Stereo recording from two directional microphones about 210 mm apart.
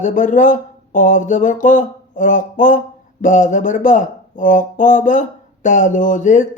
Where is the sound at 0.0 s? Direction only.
35° left (ahead or behind).